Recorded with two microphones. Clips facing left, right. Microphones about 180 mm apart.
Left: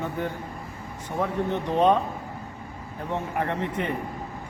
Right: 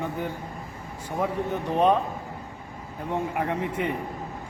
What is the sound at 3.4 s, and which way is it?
Speech, 10° right (ahead or behind).